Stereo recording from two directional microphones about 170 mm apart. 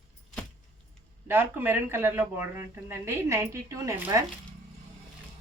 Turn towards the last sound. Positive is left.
turn(degrees=-20)  # may be behind; listen again after turning